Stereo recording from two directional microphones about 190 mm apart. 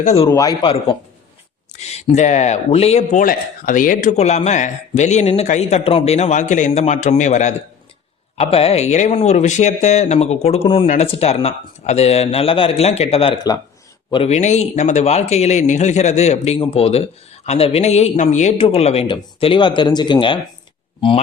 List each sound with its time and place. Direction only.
0.0 s speech: 35° left (ahead or behind)
0.3 s speech: 20° left (ahead or behind)